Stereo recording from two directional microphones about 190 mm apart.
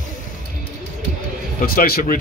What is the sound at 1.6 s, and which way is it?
Speech, 50° left (ahead or behind).